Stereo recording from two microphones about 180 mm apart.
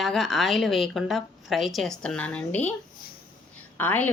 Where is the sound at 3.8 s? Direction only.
10° left (ahead or behind).